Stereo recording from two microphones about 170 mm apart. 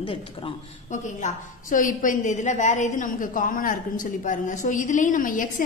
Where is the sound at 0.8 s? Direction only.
45° left (ahead or behind).